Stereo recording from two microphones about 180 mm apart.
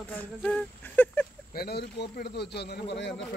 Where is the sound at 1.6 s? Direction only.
65° left (ahead or behind); by 3.2 s 80° left.